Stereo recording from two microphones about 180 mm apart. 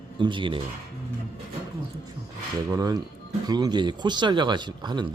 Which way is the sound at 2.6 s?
20° right (ahead or behind).